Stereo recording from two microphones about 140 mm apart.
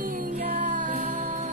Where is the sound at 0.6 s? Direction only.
65° right (ahead or behind).